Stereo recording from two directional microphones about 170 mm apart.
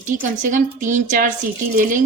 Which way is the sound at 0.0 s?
50° right (ahead or behind).